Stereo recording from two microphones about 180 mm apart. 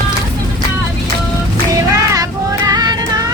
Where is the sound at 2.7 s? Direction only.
25° right (ahead or behind).